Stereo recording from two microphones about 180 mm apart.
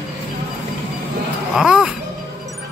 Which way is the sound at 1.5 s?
Centre (ahead or behind).